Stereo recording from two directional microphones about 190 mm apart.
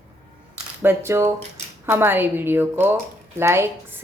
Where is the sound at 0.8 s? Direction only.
10° right (ahead or behind).